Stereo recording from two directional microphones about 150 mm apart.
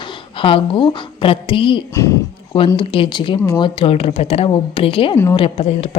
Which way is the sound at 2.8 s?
35° left (ahead or behind).